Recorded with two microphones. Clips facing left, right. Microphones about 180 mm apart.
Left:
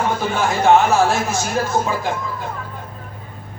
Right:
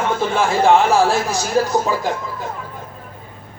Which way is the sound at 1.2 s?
35° right (ahead or behind).